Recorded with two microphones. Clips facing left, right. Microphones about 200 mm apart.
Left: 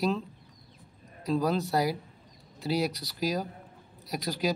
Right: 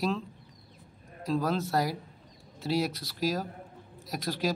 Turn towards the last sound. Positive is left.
turn(degrees=0)  # may be behind; listen again after turning